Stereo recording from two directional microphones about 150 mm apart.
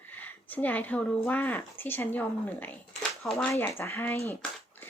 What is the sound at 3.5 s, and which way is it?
Speech, 15° left (ahead or behind).